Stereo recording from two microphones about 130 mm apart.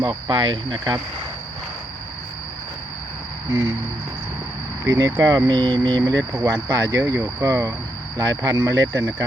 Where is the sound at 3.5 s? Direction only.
20° right (ahead or behind).